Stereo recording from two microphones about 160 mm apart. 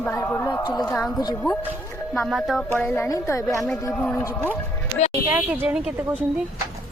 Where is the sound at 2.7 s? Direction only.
10° left (ahead or behind).